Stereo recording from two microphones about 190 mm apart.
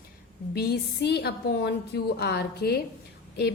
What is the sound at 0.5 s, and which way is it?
A woman's voice, 55° left (ahead or behind).